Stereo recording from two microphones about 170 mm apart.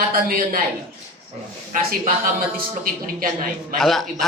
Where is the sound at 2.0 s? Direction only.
55° right (ahead or behind).